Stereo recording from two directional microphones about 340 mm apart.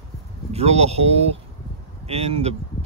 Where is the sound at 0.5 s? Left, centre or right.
Centre.